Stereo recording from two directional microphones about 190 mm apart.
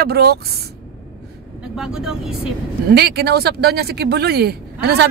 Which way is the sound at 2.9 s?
60° right (ahead or behind).